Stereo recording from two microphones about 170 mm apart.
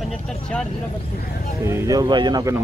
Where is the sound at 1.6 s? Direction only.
20° right (ahead or behind).